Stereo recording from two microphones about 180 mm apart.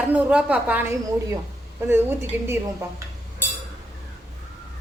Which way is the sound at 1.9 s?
10° right (ahead or behind).